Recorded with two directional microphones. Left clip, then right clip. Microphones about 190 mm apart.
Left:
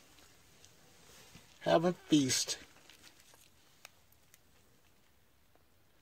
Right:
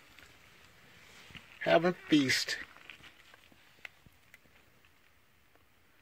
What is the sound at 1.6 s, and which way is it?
Speech, 5° left (ahead or behind).